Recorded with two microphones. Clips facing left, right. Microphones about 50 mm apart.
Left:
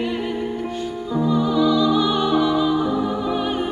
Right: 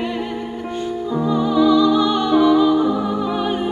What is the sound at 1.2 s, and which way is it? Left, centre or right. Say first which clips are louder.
Music: right 1 dB; centre.